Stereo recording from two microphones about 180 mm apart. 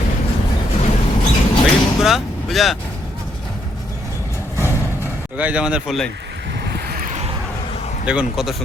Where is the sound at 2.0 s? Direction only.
Centre (ahead or behind).